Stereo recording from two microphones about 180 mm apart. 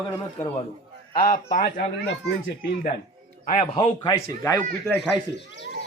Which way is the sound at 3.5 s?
30° left (ahead or behind).